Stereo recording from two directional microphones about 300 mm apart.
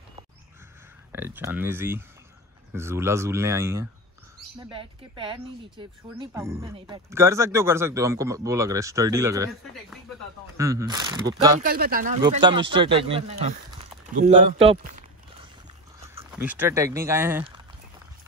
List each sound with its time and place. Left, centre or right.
1.1 s speech: centre
11.6 s speech: right
12.2 s speech: centre
16.3 s speech: centre